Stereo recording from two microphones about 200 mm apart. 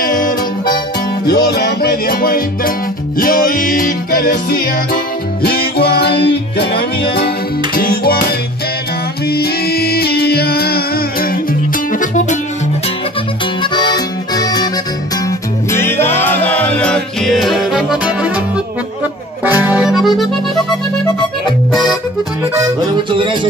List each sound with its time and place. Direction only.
0.0 s music: 45° left (ahead or behind)
11.9 s music: 40° left (ahead or behind)
13.6 s accordion: 20° left (ahead or behind)
15.7 s music: 10° left (ahead or behind); by 18.4 s 5° right (ahead or behind)
19.4 s music: 10° right (ahead or behind)
22.4 s music: 15° right (ahead or behind)